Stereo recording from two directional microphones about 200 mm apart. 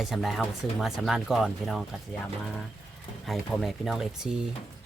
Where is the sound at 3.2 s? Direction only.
Centre (ahead or behind).